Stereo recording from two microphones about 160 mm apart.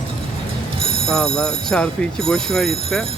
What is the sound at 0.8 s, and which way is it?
Telephone bell ringing, 35° right (ahead or behind).